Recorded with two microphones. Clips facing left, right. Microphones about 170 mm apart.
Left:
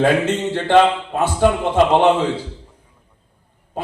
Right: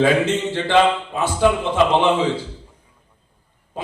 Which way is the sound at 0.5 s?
55° left (ahead or behind).